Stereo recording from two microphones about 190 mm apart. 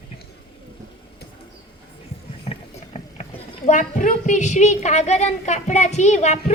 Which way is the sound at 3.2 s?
40° left (ahead or behind).